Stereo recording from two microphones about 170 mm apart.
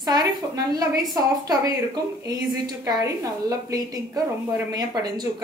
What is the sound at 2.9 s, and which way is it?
Speech, 20° right (ahead or behind).